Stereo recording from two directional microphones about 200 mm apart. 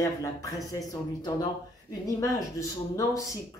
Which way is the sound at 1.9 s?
15° left (ahead or behind).